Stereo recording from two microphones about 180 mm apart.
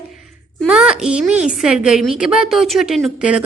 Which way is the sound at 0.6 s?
5° right (ahead or behind).